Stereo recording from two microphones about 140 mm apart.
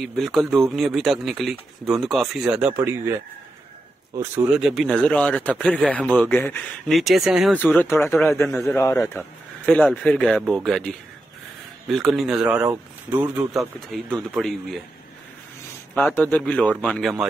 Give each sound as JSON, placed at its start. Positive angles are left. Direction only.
{"t": 0.0, "sound": "speech", "side_deg": 0}
{"t": 2.7, "sound": "speech", "side_deg": -20}
{"t": 4.2, "sound": "speech", "side_deg": -15}
{"t": 4.6, "sound": "speech", "side_deg": 0}
{"t": 6.9, "sound": "speech", "side_deg": 0}
{"t": 7.5, "sound": "speech", "side_deg": 10}
{"t": 9.7, "sound": "speech", "side_deg": 5}
{"t": 13.5, "sound": "speech", "side_deg": 0}
{"t": 15.9, "sound": "speech", "side_deg": 10}